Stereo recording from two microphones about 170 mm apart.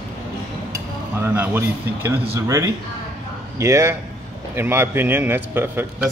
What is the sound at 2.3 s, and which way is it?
A man's voice, 15° right (ahead or behind).